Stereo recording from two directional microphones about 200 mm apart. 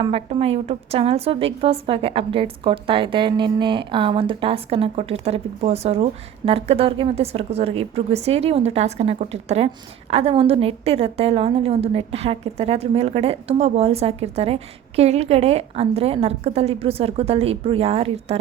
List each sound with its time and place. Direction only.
0.0 s a woman's voice: 30° right (ahead or behind)